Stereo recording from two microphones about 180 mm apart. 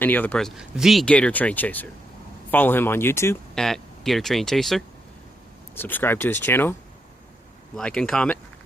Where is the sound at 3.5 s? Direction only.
Centre (ahead or behind).